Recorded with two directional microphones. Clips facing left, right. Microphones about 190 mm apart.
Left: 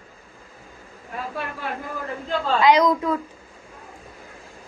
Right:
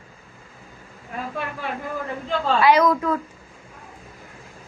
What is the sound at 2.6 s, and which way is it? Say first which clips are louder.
Speech: even; 15° left (ahead or behind).